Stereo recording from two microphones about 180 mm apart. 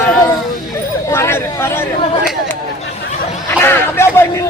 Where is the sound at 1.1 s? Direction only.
15° left (ahead or behind).